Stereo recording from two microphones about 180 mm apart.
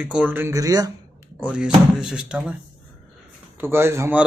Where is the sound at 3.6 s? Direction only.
15° right (ahead or behind).